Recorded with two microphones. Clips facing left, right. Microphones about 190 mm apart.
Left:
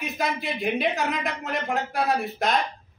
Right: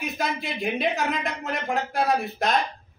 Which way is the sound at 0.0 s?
Centre (ahead or behind).